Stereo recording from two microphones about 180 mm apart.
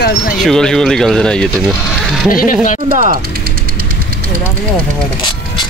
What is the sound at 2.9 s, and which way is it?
Speech, 50° right (ahead or behind).